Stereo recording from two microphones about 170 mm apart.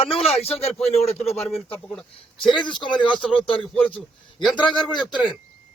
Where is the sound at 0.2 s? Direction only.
35° left (ahead or behind).